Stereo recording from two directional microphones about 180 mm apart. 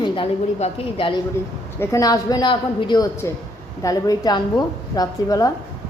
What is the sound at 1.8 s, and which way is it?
Speech, 20° left (ahead or behind).